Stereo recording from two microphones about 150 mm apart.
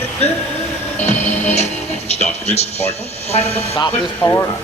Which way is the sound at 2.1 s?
45° left (ahead or behind).